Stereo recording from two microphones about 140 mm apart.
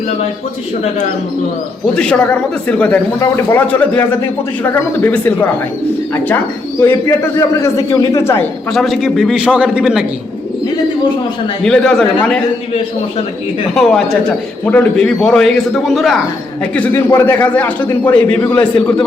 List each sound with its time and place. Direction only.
2.0 s a man's voice: 10° left (ahead or behind)
7.3 s a man's voice: 20° left (ahead or behind)
8.7 s a man's voice: centre (ahead or behind)
11.6 s a man's voice: 5° left (ahead or behind)
13.7 s a man's voice: centre (ahead or behind)